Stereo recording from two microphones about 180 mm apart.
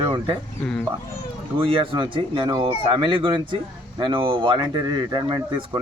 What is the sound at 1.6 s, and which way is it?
Speech, 30° right (ahead or behind).